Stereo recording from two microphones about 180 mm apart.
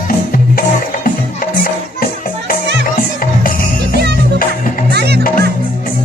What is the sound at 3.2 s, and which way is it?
Music, 50° left (ahead or behind).